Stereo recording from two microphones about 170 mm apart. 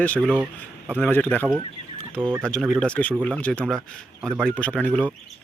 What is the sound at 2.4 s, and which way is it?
Speech, centre (ahead or behind).